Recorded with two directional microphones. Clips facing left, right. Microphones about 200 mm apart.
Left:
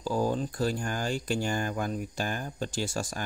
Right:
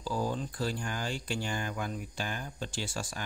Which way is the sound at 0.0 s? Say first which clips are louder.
Left 5 dB; 45° left (ahead or behind).